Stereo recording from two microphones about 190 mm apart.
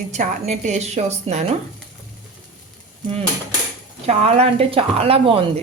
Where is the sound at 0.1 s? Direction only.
35° right (ahead or behind).